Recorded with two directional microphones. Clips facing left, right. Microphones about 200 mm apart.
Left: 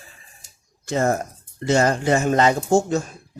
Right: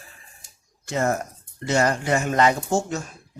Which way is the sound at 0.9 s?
30° left (ahead or behind).